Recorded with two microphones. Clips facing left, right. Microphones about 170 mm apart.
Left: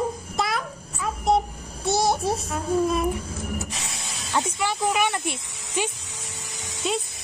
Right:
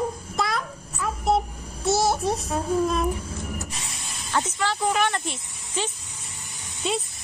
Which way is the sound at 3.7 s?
90° left.